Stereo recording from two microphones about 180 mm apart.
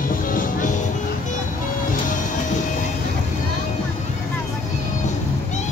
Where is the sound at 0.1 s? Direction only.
50° left (ahead or behind).